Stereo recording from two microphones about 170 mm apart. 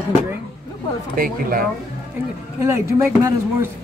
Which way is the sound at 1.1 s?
55° right (ahead or behind).